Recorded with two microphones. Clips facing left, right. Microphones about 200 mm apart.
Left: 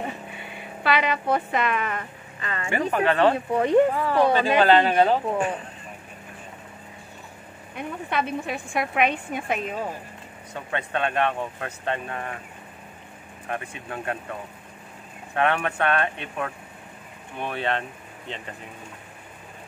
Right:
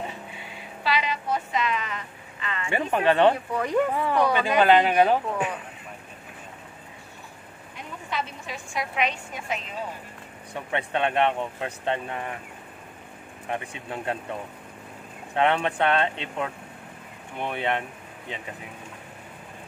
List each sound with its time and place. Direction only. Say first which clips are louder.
0.3 s speech: left 3 dB; 55° left (ahead or behind); by 2.7 s 40° left (ahead or behind)
2.7 s speech: even; 25° right (ahead or behind)
3.5 s speech: left 6 dB; 25° left (ahead or behind)
3.9 s speech: left 1 dB; 20° right (ahead or behind)
4.2 s speech: left 4 dB; 25° left (ahead or behind)
4.6 s speech: right 1 dB; 15° right (ahead or behind)
7.7 s a woman's voice: left 5 dB; 60° left (ahead or behind)
10.7 s speech: right 1 dB; 20° right (ahead or behind)
13.5 s speech: even; 20° right (ahead or behind)
15.3 s speech: right 1 dB; 20° right (ahead or behind)